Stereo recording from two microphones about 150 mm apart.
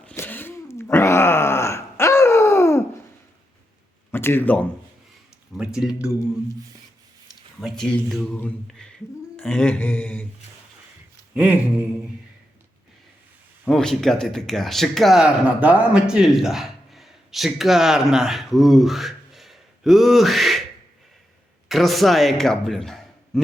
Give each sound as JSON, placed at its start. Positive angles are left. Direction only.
{"t": 0.0, "sound": "groan", "side_deg": 10}
{"t": 4.1, "sound": "speech", "side_deg": 15}
{"t": 5.5, "sound": "a man's voice", "side_deg": -5}
{"t": 7.6, "sound": "a man's voice", "side_deg": 5}
{"t": 9.3, "sound": "a sound", "side_deg": 5}
{"t": 11.3, "sound": "a sound", "side_deg": -10}
{"t": 13.7, "sound": "speech", "side_deg": 5}
{"t": 21.7, "sound": "speech", "side_deg": 0}